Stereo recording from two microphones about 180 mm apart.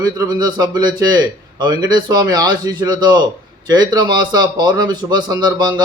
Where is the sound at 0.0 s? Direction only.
20° right (ahead or behind).